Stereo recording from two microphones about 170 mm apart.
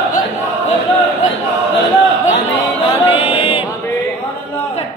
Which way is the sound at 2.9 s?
35° left (ahead or behind).